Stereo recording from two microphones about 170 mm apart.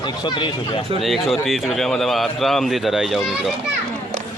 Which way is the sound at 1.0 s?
Centre (ahead or behind).